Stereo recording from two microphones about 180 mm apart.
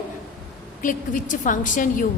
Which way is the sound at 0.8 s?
45° left (ahead or behind).